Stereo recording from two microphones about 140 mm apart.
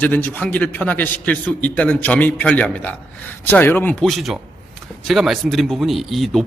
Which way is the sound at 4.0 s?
Centre (ahead or behind).